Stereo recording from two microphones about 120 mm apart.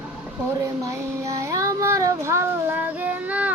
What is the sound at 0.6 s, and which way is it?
Child singing, 25° right (ahead or behind).